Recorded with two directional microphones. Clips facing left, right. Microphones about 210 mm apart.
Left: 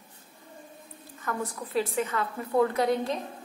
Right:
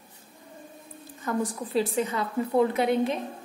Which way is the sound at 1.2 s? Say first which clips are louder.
Right 5 dB; 15° right (ahead or behind).